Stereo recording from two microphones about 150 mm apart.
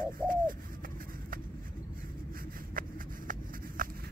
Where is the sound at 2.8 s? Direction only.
70° right (ahead or behind).